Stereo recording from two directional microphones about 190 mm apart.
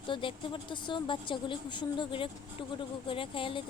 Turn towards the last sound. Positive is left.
turn(degrees=25)  # may be behind; listen again after turning